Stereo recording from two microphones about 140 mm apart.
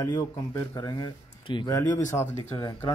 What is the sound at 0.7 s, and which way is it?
Speech, 30° left (ahead or behind).